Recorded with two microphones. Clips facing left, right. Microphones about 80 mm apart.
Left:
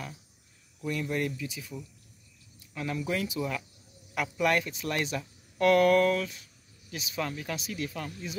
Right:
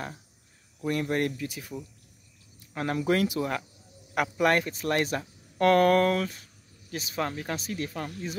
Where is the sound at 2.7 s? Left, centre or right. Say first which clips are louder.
Right 6 dB; right.